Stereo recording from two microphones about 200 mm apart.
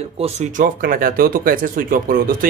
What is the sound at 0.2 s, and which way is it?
Speech, 40° right (ahead or behind).